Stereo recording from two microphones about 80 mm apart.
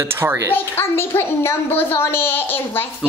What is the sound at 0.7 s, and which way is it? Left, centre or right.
A child's voice, left.